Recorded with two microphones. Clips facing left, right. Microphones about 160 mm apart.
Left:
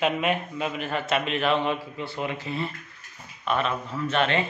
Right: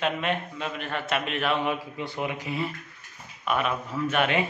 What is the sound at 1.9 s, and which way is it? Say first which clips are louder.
A man's voice: even; 15° right (ahead or behind).